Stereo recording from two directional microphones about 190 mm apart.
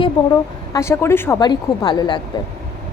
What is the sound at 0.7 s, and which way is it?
A woman's voice, 15° left (ahead or behind).